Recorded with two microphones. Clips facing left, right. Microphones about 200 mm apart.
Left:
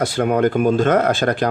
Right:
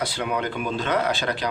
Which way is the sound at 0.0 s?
50° left (ahead or behind).